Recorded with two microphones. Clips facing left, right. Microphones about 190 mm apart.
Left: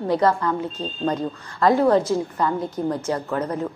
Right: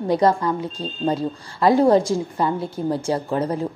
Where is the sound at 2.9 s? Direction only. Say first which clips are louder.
Right 2 dB; 30° right (ahead or behind).